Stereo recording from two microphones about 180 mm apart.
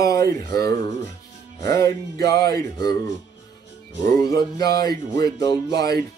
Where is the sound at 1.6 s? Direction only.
20° left (ahead or behind).